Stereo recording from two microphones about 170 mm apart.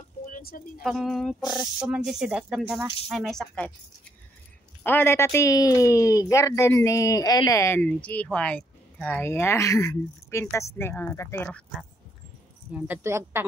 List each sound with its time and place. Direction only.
0.3 s speech: 60° left (ahead or behind)
0.8 s speech: centre (ahead or behind)
4.8 s speech: 15° left (ahead or behind)
12.8 s speech: 15° right (ahead or behind)